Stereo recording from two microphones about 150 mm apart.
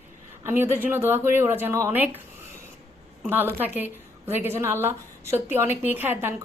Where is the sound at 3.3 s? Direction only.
15° right (ahead or behind).